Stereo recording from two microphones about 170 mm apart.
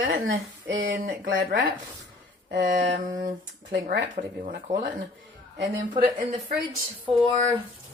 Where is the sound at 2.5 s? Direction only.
85° right.